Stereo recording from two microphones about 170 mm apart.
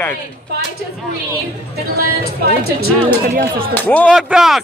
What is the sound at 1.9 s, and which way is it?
A woman's voice, 65° right (ahead or behind).